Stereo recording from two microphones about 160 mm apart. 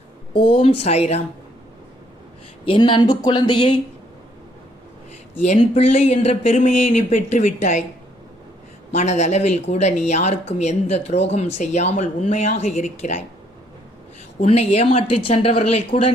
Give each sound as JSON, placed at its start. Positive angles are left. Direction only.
{"t": 0.3, "sound": "speech", "side_deg": 35}
{"t": 2.6, "sound": "speech", "side_deg": 30}
{"t": 5.5, "sound": "speech", "side_deg": 40}
{"t": 8.9, "sound": "speech", "side_deg": 45}
{"t": 14.4, "sound": "speech", "side_deg": 40}